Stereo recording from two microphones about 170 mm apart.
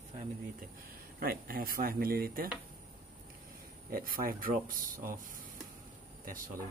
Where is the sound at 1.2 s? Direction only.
60° right (ahead or behind).